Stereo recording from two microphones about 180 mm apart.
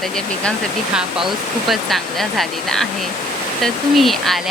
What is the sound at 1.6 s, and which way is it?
Speech, centre (ahead or behind).